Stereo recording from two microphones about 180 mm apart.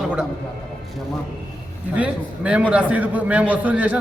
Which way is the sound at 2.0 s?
5° right (ahead or behind).